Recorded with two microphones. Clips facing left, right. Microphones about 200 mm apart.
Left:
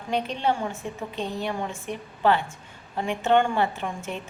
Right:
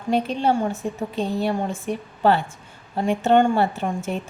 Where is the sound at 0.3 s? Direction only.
40° right (ahead or behind).